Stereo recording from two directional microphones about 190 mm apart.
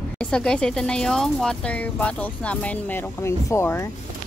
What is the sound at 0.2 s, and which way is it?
Speech, 5° left (ahead or behind).